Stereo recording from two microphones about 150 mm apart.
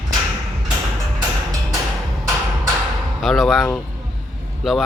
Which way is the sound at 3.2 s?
Centre (ahead or behind).